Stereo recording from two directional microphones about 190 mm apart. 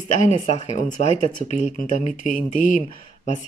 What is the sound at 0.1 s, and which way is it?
Speech, 40° left (ahead or behind).